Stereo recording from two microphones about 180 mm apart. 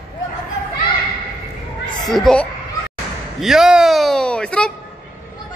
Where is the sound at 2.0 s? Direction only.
Centre (ahead or behind).